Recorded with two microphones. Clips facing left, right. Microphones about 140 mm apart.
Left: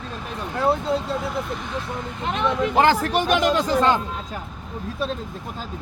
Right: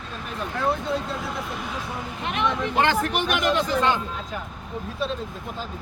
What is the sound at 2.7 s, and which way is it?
Speech, 35° left (ahead or behind).